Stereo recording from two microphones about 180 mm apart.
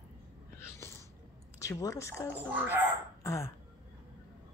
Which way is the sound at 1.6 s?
20° left (ahead or behind).